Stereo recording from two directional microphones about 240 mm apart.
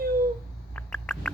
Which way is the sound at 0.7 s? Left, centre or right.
Centre.